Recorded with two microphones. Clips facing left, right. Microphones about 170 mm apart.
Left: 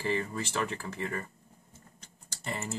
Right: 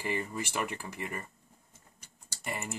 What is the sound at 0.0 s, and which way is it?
Speech, 15° right (ahead or behind).